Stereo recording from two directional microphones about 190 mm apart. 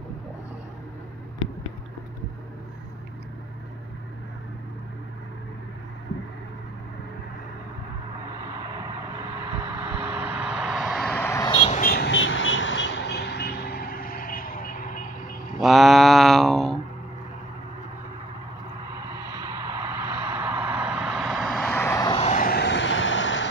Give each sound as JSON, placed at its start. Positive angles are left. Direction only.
{"t": 9.6, "sound": "vehicle", "side_deg": -10}
{"t": 11.2, "sound": "a sound", "side_deg": 15}
{"t": 11.5, "sound": "a sound", "side_deg": 30}
{"t": 11.8, "sound": "vehicle", "side_deg": 55}
{"t": 15.6, "sound": "mantra", "side_deg": 0}
{"t": 19.3, "sound": "vehicle", "side_deg": -15}
{"t": 22.2, "sound": "vehicle", "side_deg": 45}